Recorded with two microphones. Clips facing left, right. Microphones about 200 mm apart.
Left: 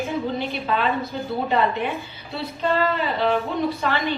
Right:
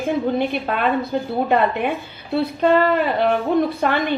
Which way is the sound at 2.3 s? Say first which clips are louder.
Right 7 dB; 55° right (ahead or behind).